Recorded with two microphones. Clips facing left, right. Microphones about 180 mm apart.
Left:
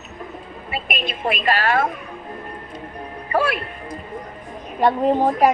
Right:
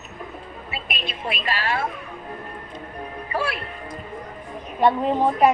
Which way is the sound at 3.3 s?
50° left (ahead or behind).